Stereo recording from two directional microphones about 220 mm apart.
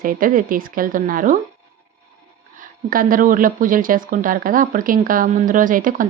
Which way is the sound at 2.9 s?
40° right (ahead or behind).